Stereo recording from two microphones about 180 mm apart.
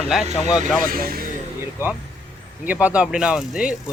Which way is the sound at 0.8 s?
55° right (ahead or behind).